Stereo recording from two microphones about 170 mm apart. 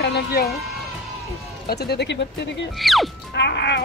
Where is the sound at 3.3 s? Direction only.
90° left.